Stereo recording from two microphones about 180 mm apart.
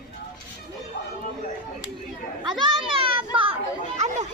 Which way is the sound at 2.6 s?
30° right (ahead or behind).